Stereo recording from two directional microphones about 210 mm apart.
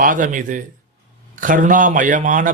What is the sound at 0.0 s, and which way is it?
A man's voice, 40° right (ahead or behind).